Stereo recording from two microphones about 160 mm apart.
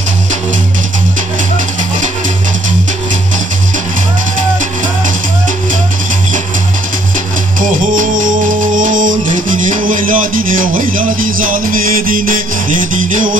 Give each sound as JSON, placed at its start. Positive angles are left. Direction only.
{"t": 7.6, "sound": "music", "side_deg": -55}